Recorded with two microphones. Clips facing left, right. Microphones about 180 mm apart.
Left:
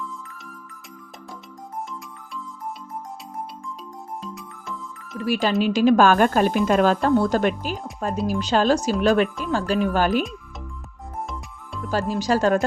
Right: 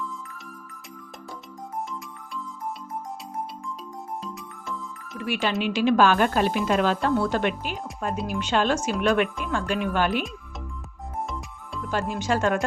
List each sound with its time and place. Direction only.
0.0 s music: centre (ahead or behind)
5.1 s a woman's voice: 35° left (ahead or behind)
11.9 s speech: 35° left (ahead or behind)